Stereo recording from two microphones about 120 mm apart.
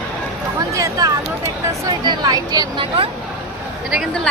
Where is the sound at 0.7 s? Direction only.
25° right (ahead or behind).